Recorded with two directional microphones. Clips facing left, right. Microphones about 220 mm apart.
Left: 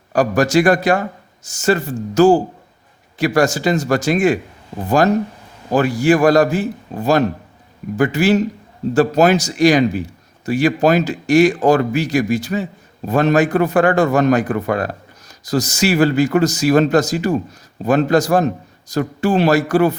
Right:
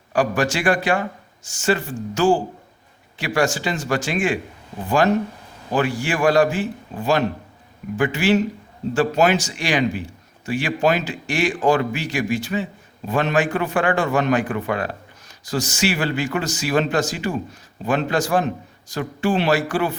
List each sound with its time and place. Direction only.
0.1 s a man's voice: 40° left (ahead or behind)